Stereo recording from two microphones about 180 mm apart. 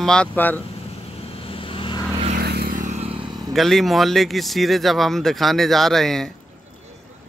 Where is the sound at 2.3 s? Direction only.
60° right (ahead or behind); by 3.1 s 40° right (ahead or behind).